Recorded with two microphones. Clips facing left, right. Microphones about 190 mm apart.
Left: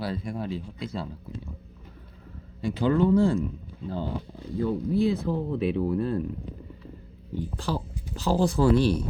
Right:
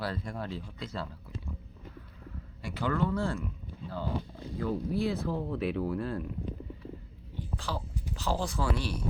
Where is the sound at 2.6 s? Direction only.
20° left (ahead or behind).